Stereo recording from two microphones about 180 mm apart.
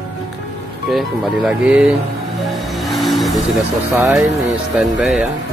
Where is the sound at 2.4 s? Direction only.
Centre (ahead or behind).